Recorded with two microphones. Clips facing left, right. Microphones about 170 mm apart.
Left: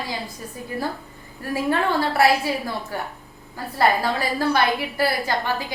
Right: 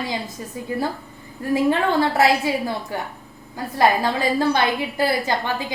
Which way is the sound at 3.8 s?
20° right (ahead or behind).